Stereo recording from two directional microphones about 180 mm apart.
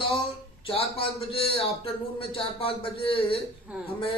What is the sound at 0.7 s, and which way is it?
Speech, 30° left (ahead or behind).